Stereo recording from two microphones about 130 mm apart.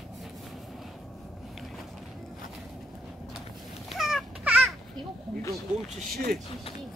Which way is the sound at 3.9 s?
Centre (ahead or behind).